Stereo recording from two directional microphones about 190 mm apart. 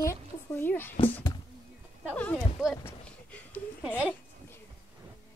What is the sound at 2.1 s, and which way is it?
Speech, 5° left (ahead or behind).